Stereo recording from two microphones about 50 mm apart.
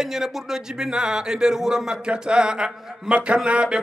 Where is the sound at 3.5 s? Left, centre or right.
Right.